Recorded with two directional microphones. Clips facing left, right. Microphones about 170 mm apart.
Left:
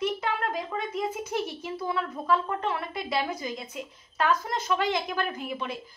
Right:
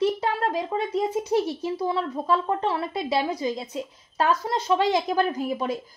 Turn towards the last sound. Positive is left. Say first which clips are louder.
# right 7 dB
turn(degrees=-40)  # may be behind; listen again after turning